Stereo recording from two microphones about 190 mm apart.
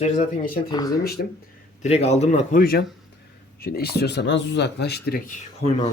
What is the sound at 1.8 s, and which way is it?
Speech, 35° left (ahead or behind).